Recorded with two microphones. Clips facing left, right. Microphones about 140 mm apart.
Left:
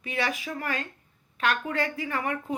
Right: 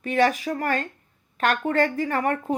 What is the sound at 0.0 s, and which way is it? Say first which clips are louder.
Speech: right 9 dB; 45° right (ahead or behind).